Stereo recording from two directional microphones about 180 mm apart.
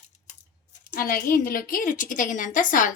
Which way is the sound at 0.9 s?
55° left (ahead or behind).